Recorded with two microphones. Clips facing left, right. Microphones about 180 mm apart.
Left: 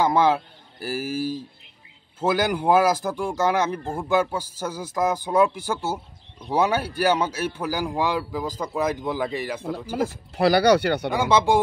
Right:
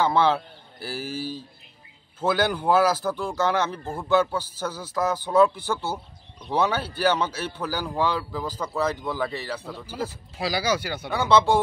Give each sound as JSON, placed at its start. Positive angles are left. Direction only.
{"t": 0.0, "sound": "a man's voice", "side_deg": 10}
{"t": 9.8, "sound": "speech", "side_deg": 50}
{"t": 11.1, "sound": "a man's voice", "side_deg": 10}